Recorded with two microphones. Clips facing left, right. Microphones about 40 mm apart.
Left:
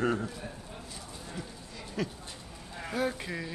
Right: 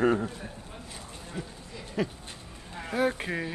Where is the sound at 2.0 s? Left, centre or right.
Right.